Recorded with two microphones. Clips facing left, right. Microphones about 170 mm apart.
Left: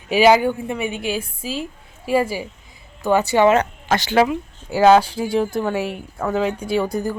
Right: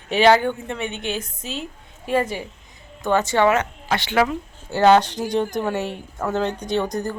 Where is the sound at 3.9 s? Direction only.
40° left (ahead or behind).